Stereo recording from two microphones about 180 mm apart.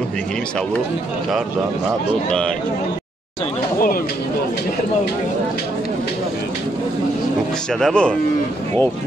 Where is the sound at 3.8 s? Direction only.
55° left (ahead or behind).